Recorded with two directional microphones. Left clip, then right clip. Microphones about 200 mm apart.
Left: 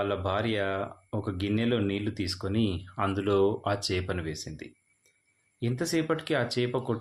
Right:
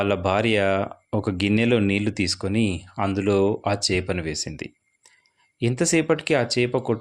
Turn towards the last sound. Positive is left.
turn(degrees=-30)  # may be behind; listen again after turning